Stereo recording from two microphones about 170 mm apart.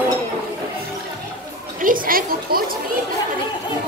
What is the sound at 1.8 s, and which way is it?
Speech, 55° right (ahead or behind).